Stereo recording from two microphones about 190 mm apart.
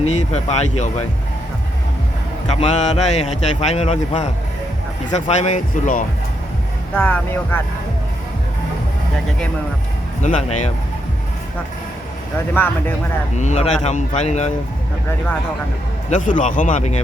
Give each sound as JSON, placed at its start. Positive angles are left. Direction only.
{"t": 0.0, "sound": "a man's voice", "side_deg": 35}
{"t": 2.5, "sound": "a man's voice", "side_deg": 35}
{"t": 6.9, "sound": "speech", "side_deg": 10}
{"t": 10.2, "sound": "a man's voice", "side_deg": 40}
{"t": 13.3, "sound": "a man's voice", "side_deg": 35}
{"t": 16.0, "sound": "a man's voice", "side_deg": 40}